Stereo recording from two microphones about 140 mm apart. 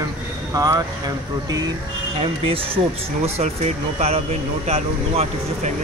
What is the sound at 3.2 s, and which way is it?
Speech, 50° right (ahead or behind).